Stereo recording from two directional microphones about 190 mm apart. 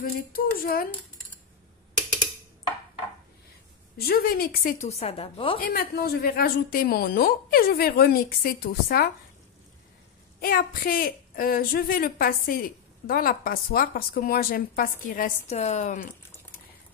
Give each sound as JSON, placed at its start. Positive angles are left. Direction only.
{"t": 0.0, "sound": "a woman's voice", "side_deg": 50}
{"t": 4.0, "sound": "a woman's voice", "side_deg": 55}
{"t": 4.8, "sound": "a woman's voice", "side_deg": 35}
{"t": 5.6, "sound": "a woman's voice", "side_deg": 50}
{"t": 10.4, "sound": "a woman's voice", "side_deg": 50}